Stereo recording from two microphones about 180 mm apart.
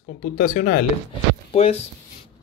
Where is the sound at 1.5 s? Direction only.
35° left (ahead or behind).